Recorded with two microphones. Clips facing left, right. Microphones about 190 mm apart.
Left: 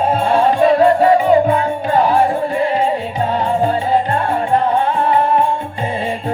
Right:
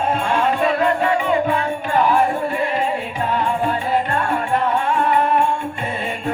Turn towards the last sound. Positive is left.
turn(degrees=30)  # may be behind; listen again after turning